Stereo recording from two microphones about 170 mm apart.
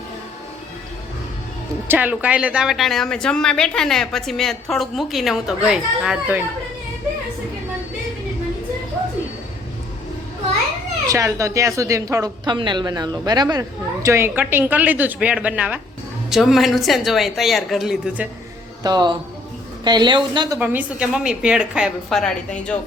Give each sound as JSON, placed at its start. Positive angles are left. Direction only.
{"t": 1.9, "sound": "speech", "side_deg": -10}
{"t": 11.1, "sound": "speech", "side_deg": -20}
{"t": 18.8, "sound": "a man's voice", "side_deg": -25}
{"t": 20.6, "sound": "speech", "side_deg": -10}